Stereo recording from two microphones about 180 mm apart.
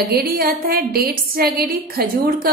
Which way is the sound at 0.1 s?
55° right (ahead or behind).